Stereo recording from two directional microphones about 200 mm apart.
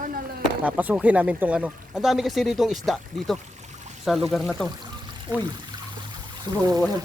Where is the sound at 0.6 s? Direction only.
10° right (ahead or behind).